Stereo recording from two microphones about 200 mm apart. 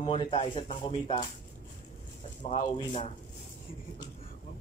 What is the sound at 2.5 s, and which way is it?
Speech, 30° left (ahead or behind).